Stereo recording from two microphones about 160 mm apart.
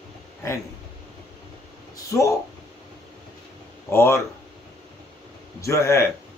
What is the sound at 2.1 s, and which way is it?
Speech, 20° left (ahead or behind).